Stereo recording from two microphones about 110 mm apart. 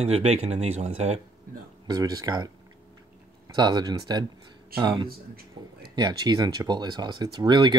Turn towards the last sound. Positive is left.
turn(degrees=-40)  # may be behind; listen again after turning